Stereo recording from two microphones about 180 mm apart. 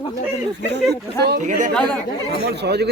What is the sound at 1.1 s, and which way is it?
Speech, 65° right (ahead or behind).